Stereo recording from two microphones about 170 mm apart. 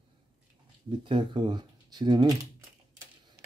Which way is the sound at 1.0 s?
30° right (ahead or behind).